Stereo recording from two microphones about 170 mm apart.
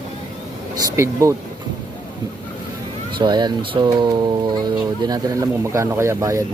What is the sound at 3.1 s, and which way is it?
Speech, 25° right (ahead or behind).